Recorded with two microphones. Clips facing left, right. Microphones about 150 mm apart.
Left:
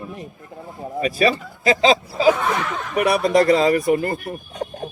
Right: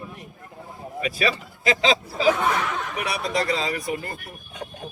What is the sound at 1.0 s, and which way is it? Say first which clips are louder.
A man's voice: left 6 dB; 40° left (ahead or behind).